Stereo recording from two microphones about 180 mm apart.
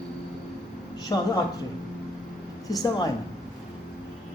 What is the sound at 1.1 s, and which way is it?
Speech, 20° left (ahead or behind).